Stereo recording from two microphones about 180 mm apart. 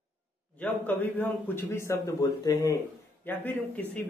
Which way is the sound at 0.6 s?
10° left (ahead or behind).